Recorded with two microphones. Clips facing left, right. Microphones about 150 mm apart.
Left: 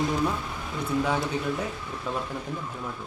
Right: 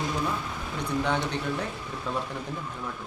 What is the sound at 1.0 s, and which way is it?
Speech, 5° left (ahead or behind).